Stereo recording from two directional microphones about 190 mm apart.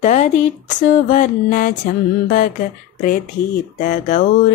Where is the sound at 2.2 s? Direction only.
45° left (ahead or behind).